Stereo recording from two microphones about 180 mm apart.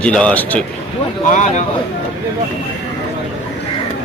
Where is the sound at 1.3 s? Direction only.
45° left (ahead or behind).